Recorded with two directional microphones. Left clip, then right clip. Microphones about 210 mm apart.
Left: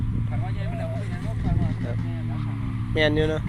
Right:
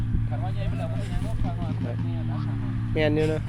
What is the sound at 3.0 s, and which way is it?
Speech, 5° right (ahead or behind).